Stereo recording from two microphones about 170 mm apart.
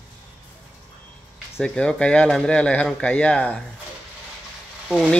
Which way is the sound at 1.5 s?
5° left (ahead or behind).